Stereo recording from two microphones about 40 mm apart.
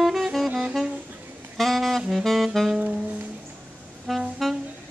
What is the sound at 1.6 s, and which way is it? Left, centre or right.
Saxophone, centre.